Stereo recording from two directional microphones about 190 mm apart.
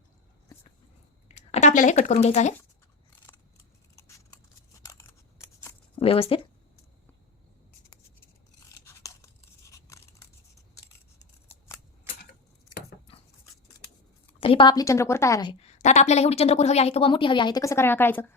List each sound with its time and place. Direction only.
1.3 s speech: 35° left (ahead or behind)
3.3 s scissors: 10° left (ahead or behind)
3.9 s keys jangling: 15° left (ahead or behind)
4.8 s scissors: 15° left (ahead or behind)
6.0 s speech: 30° left (ahead or behind)
8.8 s crunch: 15° left (ahead or behind)
9.7 s scissors: 15° left (ahead or behind)
14.4 s a woman's voice: 25° left (ahead or behind)
15.6 s a woman's voice: 40° left (ahead or behind); by 18.3 s 10° left (ahead or behind)